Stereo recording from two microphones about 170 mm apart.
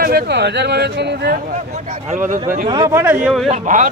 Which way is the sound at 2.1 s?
50° right (ahead or behind).